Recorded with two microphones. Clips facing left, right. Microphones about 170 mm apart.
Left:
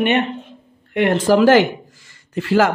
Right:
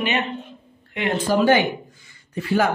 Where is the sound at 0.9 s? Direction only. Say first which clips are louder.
Left 7 dB; 75° left (ahead or behind).